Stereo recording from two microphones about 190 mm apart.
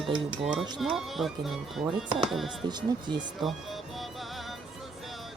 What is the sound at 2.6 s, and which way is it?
Speech, 25° right (ahead or behind).